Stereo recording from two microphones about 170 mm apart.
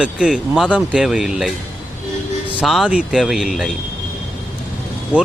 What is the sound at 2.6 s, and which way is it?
Speech, centre (ahead or behind).